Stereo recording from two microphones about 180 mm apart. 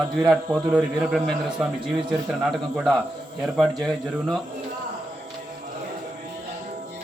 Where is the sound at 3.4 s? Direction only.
Centre (ahead or behind).